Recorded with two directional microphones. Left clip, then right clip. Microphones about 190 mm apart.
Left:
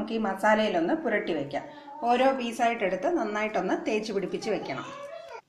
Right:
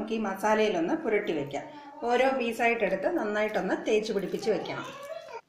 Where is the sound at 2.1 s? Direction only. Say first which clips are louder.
Right 1 dB; 40° left (ahead or behind).